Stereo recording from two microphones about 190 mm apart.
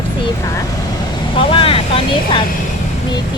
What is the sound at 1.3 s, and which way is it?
A child's voice, 30° left (ahead or behind).